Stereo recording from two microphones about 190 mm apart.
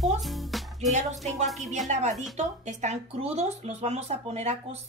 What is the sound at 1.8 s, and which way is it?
Speech, 40° right (ahead or behind).